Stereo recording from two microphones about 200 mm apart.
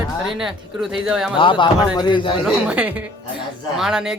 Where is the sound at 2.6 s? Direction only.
5° right (ahead or behind).